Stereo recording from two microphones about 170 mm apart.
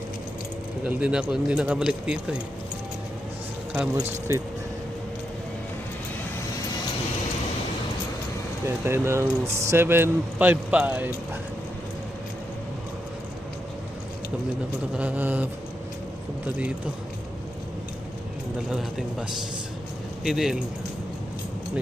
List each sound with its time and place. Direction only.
0.9 s speech: 5° right (ahead or behind)
4.3 s speech: 15° right (ahead or behind)
8.6 s speech: 15° right (ahead or behind)
14.9 s speech: 10° right (ahead or behind)
18.7 s speech: centre (ahead or behind)